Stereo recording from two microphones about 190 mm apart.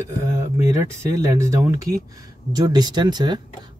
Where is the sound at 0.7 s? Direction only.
15° right (ahead or behind).